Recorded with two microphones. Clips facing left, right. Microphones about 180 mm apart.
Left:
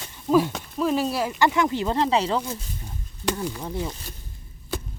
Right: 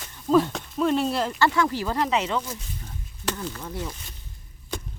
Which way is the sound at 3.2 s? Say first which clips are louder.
Left 4 dB; 10° left (ahead or behind).